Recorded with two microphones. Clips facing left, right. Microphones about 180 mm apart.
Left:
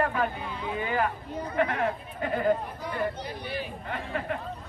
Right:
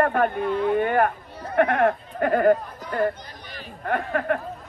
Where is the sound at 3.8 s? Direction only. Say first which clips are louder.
Right 8 dB; 60° right (ahead or behind).